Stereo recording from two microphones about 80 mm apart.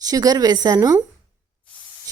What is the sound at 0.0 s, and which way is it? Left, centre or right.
Speech, right.